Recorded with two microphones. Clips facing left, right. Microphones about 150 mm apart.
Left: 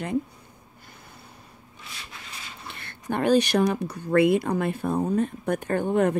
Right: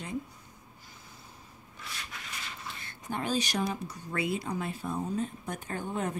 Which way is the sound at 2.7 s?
65° left (ahead or behind).